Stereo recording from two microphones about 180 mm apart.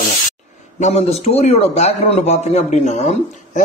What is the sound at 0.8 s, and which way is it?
A man's voice, 40° left (ahead or behind).